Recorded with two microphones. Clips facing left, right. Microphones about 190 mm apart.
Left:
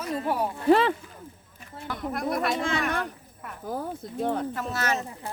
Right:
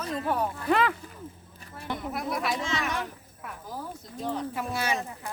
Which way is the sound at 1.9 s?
Centre (ahead or behind).